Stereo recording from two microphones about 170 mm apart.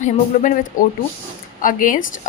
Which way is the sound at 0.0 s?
50° left (ahead or behind).